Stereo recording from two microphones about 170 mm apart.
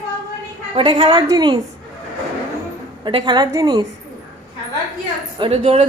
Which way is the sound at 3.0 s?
30° right (ahead or behind).